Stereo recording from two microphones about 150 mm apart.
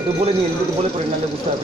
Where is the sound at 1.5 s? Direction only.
45° right (ahead or behind).